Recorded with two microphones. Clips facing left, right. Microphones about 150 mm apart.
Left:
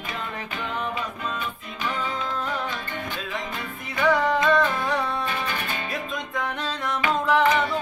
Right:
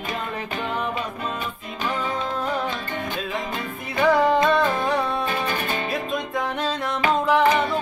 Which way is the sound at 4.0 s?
35° right (ahead or behind).